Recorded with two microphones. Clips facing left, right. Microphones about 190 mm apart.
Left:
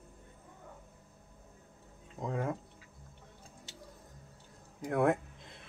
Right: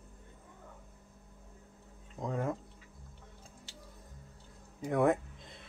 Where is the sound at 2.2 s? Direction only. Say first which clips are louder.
Even; 5° left (ahead or behind).